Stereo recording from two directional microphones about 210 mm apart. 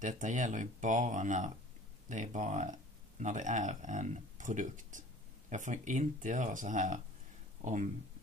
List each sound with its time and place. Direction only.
0.0 s speech: 35° right (ahead or behind)